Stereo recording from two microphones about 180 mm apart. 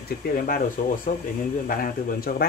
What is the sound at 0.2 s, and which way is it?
Speech, 55° left (ahead or behind).